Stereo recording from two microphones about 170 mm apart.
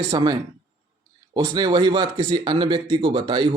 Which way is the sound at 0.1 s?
25° right (ahead or behind).